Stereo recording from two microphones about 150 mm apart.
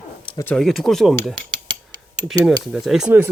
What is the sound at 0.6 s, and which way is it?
Speech, centre (ahead or behind).